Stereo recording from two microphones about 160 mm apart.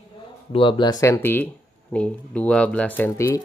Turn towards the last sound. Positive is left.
turn(degrees=10)  # may be behind; listen again after turning